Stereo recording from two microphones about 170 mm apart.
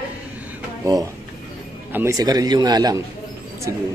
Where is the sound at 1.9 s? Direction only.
20° right (ahead or behind).